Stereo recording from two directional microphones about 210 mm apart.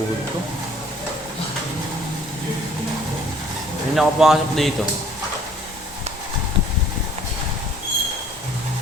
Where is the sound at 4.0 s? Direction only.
Centre (ahead or behind).